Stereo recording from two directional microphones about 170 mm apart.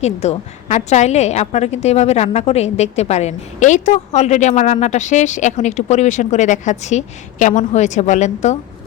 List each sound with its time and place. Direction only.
0.0 s a woman's voice: 40° left (ahead or behind)